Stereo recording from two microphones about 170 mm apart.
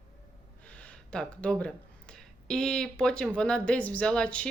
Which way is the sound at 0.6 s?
5° left (ahead or behind).